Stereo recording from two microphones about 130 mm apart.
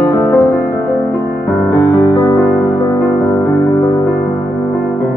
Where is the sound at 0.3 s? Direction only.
20° left (ahead or behind).